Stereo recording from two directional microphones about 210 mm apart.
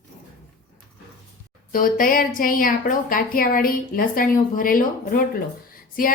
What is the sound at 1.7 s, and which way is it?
A woman's voice, 40° left (ahead or behind).